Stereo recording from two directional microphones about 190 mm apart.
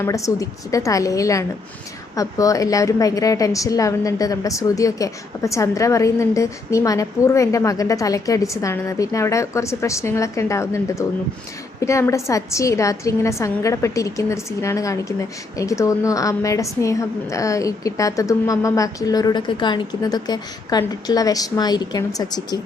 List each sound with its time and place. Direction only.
0.0 s a woman's voice: 15° left (ahead or behind)